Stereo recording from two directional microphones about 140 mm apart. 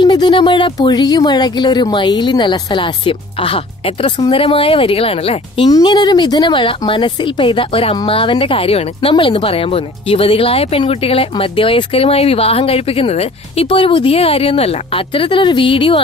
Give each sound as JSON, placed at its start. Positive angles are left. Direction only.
{"t": 0.0, "sound": "speech", "side_deg": 30}
{"t": 5.7, "sound": "speech", "side_deg": 30}